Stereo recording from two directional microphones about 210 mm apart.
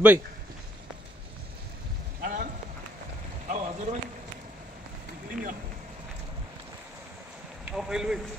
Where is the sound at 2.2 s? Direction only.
40° right (ahead or behind).